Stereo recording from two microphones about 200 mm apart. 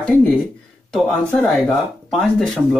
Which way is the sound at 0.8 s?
5° left (ahead or behind).